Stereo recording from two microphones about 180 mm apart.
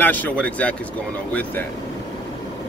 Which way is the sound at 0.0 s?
10° left (ahead or behind).